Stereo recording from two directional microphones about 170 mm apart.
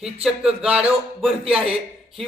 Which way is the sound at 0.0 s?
5° right (ahead or behind).